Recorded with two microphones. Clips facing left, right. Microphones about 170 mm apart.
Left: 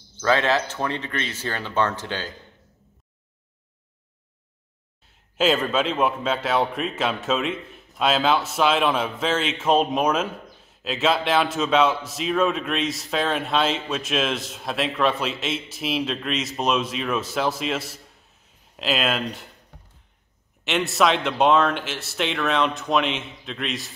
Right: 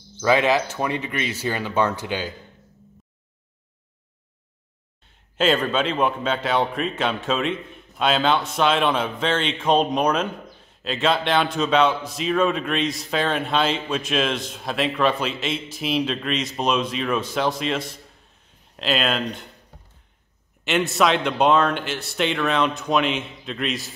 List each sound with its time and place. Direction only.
0.2 s speech: 10° right (ahead or behind)
5.0 s a man's voice: centre (ahead or behind)
20.6 s a man's voice: centre (ahead or behind)